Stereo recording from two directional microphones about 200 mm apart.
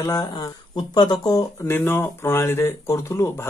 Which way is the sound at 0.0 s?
15° left (ahead or behind).